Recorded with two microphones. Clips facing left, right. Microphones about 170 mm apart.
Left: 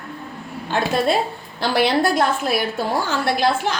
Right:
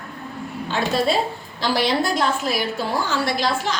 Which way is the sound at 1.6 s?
60° left (ahead or behind).